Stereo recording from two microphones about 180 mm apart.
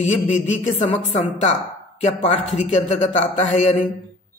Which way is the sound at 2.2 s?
35° left (ahead or behind).